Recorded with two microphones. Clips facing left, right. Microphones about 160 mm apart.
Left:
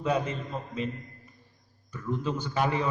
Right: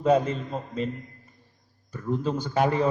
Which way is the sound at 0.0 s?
45° right (ahead or behind).